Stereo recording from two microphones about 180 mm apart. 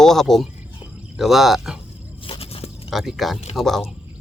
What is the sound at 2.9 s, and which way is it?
Speech, centre (ahead or behind).